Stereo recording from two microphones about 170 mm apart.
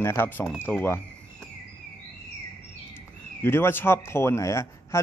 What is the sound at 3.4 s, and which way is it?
Speech, 15° left (ahead or behind).